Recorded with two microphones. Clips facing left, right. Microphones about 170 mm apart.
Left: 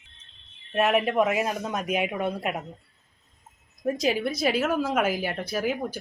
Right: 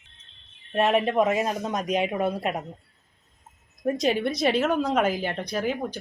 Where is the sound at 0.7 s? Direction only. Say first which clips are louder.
Right 1 dB; 30° right (ahead or behind).